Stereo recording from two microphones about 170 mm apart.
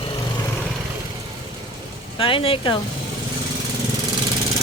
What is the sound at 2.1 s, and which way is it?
Speech, 30° left (ahead or behind).